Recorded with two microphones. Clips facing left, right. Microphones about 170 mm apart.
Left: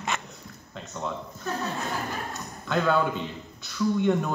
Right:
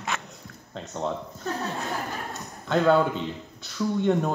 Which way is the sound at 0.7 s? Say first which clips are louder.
Right 4 dB; 30° right (ahead or behind).